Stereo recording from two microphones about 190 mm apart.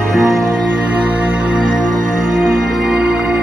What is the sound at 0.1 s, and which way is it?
Music, centre (ahead or behind).